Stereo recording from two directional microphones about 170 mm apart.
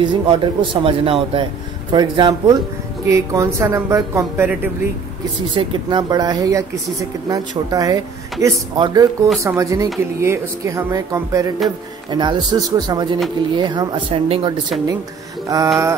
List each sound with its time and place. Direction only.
0.0 s a woman's voice: 30° right (ahead or behind)
5.5 s speech: 30° right (ahead or behind)